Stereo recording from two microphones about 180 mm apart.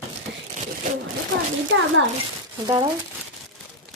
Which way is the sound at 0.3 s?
70° right (ahead or behind).